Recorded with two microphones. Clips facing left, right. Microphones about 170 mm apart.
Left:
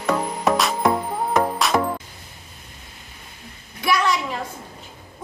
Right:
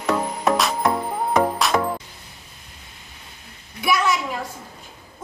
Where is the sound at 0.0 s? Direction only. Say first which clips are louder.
Even; centre (ahead or behind).